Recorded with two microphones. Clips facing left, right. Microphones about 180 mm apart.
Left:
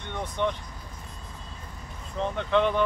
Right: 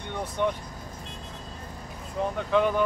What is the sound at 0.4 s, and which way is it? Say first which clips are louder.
Speech: right 1 dB; 10° right (ahead or behind).